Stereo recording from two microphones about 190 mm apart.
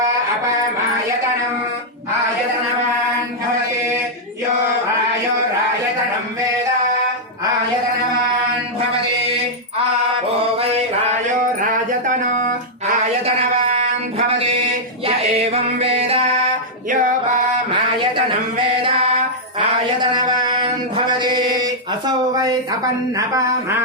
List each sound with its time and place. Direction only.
11.6 s music: 45° right (ahead or behind)
15.6 s music: 30° right (ahead or behind)
16.9 s music: 45° right (ahead or behind)
18.8 s mantra: 30° right (ahead or behind)
20.0 s mantra: 25° right (ahead or behind)
23.1 s speech: 15° right (ahead or behind)